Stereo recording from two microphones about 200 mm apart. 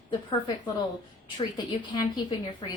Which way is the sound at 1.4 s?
20° left (ahead or behind).